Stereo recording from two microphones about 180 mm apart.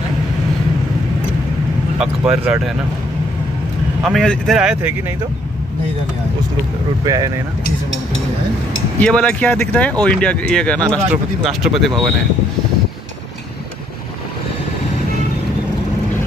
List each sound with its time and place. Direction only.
2.0 s speech: 5° right (ahead or behind)
4.0 s speech: centre (ahead or behind)
7.1 s speech: 20° right (ahead or behind)
9.0 s speech: 5° left (ahead or behind)